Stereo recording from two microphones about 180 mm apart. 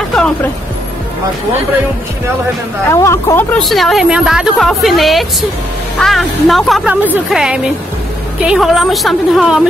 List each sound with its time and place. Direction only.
2.9 s speech: 15° left (ahead or behind)
3.5 s a woman's voice: centre (ahead or behind)